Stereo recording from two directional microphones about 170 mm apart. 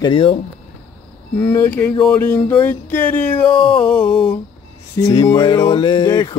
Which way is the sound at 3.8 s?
5° left (ahead or behind).